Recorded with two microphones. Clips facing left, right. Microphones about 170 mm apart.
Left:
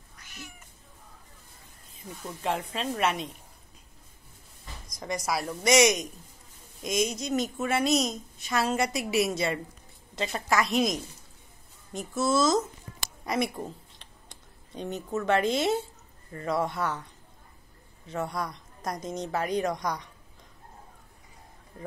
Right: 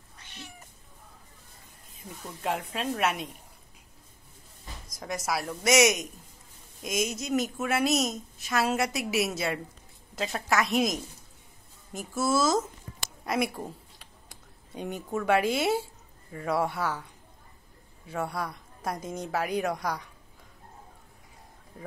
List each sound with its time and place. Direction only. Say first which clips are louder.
0.2 s cat: even; 30° right (ahead or behind)
2.4 s a woman's voice: even; 5° right (ahead or behind)
4.9 s a woman's voice: left 1 dB; 5° right (ahead or behind)
13.9 s a sound: even; 5° right (ahead or behind)
18.0 s a woman's voice: even; 10° right (ahead or behind)